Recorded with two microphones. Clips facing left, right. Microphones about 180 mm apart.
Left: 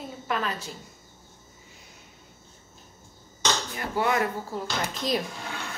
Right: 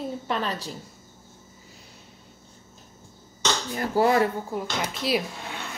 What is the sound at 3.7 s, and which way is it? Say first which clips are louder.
Speech: right 7 dB; 35° right (ahead or behind).